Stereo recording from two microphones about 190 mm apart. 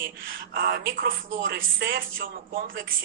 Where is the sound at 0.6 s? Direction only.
50° right (ahead or behind).